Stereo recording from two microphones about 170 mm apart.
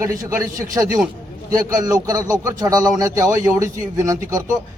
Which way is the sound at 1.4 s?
20° right (ahead or behind).